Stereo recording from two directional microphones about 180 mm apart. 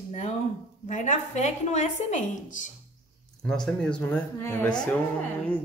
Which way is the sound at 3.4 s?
5° left (ahead or behind).